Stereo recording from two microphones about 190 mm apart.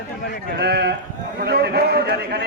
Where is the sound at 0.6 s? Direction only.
60° right (ahead or behind).